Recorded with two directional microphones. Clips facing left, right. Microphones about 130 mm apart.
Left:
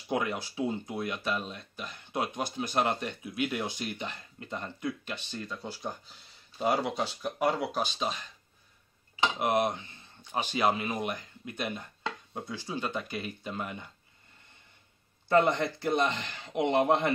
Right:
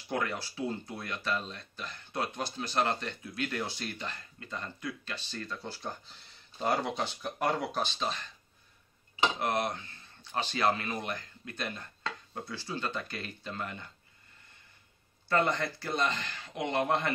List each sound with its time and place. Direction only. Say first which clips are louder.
0.1 s speech: left 3 dB; 15° left (ahead or behind)
9.4 s speech: left 4 dB; 20° left (ahead or behind)
15.2 s speech: left 4 dB; 20° left (ahead or behind)